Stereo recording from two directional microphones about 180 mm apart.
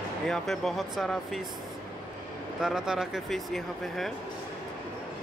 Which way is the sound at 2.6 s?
5° right (ahead or behind).